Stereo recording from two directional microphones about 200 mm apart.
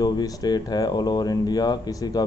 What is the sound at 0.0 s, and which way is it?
Speech, 20° left (ahead or behind).